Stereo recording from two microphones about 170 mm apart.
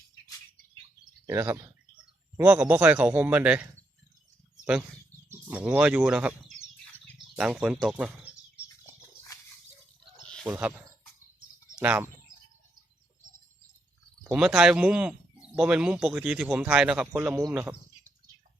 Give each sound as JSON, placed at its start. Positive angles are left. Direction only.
{"t": 1.3, "sound": "speech", "side_deg": -15}
{"t": 9.3, "sound": "a sound", "side_deg": 20}
{"t": 10.4, "sound": "speech", "side_deg": -10}
{"t": 14.3, "sound": "speech", "side_deg": -5}